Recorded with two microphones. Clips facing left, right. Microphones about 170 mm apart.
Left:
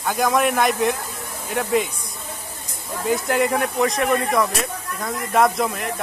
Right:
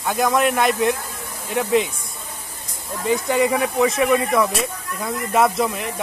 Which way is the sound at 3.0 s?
Centre (ahead or behind).